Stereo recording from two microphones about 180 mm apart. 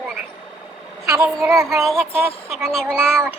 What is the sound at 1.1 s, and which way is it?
Speech, 15° right (ahead or behind).